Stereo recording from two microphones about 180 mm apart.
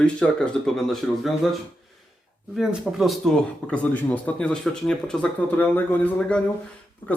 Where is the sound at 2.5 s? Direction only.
Centre (ahead or behind).